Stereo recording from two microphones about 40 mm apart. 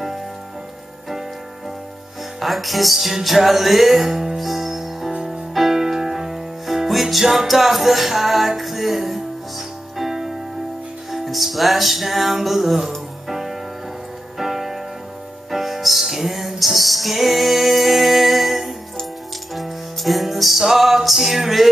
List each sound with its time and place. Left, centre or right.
2.4 s music: centre
5.1 s music: centre